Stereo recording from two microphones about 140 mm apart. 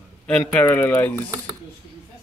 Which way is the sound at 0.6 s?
15° left (ahead or behind).